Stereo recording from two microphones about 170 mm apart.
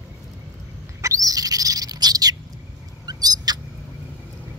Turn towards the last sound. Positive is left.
turn(degrees=-25)  # may be behind; listen again after turning